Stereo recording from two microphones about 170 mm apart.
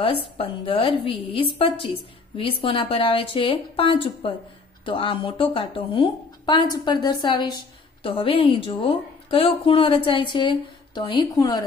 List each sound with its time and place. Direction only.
0.0 s speech: 30° left (ahead or behind)